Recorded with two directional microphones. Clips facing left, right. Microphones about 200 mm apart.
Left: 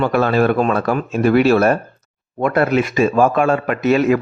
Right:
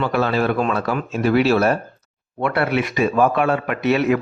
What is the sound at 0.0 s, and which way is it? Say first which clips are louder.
A man's voice: left 4 dB; 50° left (ahead or behind).